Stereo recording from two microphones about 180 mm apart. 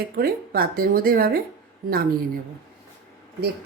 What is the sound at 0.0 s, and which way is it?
Speech, 55° right (ahead or behind).